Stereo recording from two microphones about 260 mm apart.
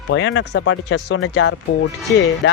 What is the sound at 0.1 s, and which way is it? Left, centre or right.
Speech, left.